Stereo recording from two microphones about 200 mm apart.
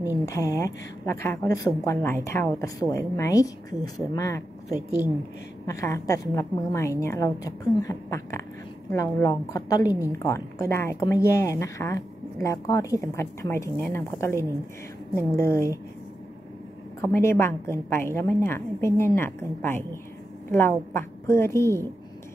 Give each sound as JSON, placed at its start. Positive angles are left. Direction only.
{"t": 0.2, "sound": "a woman's voice", "side_deg": 15}
{"t": 17.0, "sound": "a woman's voice", "side_deg": 15}